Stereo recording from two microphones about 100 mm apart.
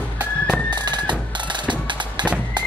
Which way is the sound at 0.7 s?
45° right (ahead or behind).